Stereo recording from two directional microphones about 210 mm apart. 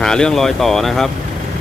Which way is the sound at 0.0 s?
5° left (ahead or behind).